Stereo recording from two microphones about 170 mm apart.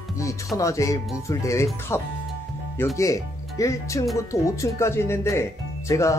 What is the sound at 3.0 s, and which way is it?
Speech, 20° left (ahead or behind).